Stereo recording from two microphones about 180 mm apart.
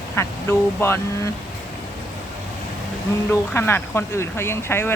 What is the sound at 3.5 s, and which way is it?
Speech, 10° left (ahead or behind).